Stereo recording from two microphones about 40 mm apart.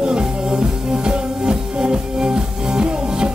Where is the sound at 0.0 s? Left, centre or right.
Right.